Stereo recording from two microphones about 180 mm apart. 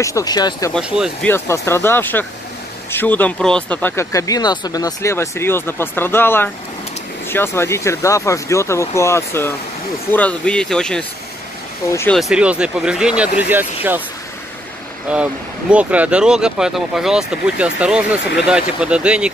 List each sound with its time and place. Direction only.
0.0 s speech: 20° left (ahead or behind)
0.7 s speech: 5° right (ahead or behind)
1.2 s speech: 15° left (ahead or behind)
12.1 s speech: centre (ahead or behind)
15.7 s speech: 5° right (ahead or behind)